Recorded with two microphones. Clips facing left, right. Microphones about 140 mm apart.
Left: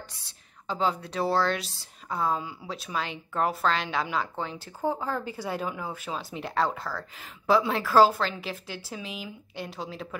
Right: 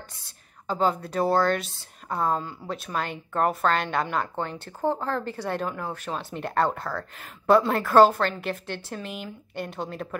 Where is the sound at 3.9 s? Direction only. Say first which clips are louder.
Right 3 dB; centre (ahead or behind).